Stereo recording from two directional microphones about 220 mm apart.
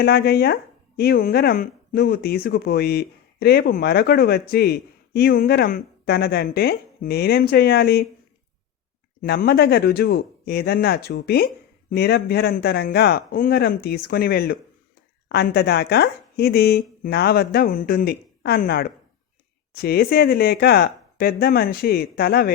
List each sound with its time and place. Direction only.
0.0 s speech: 45° left (ahead or behind)
9.2 s speech: 45° left (ahead or behind)